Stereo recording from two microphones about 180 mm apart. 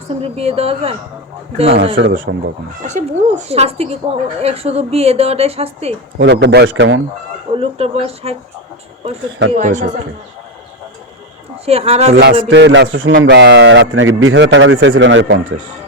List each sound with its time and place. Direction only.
0.2 s a woman's voice: 35° right (ahead or behind)
2.0 s a man's voice: 90° right
2.8 s a woman's voice: 40° right (ahead or behind)
6.1 s speech: 70° right (ahead or behind); by 7.0 s 90° right
7.5 s a woman's voice: 35° right (ahead or behind)
9.5 s a woman's voice: 40° right (ahead or behind)
11.6 s a woman's voice: 35° right (ahead or behind)
12.5 s a man's voice: 80° right